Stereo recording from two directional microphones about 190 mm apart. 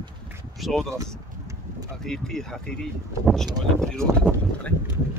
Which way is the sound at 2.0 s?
5° left (ahead or behind).